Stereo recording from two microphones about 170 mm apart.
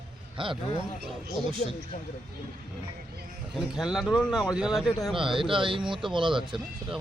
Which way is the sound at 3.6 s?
Centre (ahead or behind).